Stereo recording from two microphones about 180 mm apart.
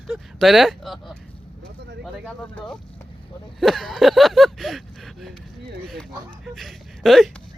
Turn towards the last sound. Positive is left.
turn(degrees=0)  # may be behind; listen again after turning